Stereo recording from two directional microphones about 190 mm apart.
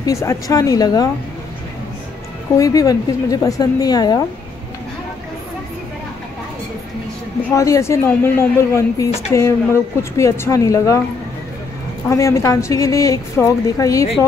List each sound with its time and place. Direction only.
0.0 s a woman's voice: 15° left (ahead or behind)
2.5 s a woman's voice: 15° left (ahead or behind)
7.5 s a woman's voice: 15° left (ahead or behind)
12.1 s a woman's voice: 15° left (ahead or behind)